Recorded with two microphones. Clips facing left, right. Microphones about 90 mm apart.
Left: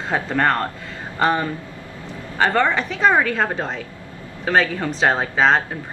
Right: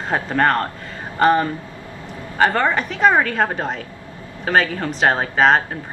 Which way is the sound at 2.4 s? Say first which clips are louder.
Right 1 dB; 10° right (ahead or behind).